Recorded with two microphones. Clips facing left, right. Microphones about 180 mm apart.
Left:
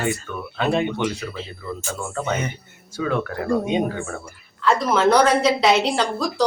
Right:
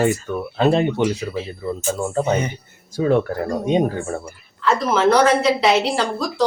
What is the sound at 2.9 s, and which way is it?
Speech, 35° right (ahead or behind).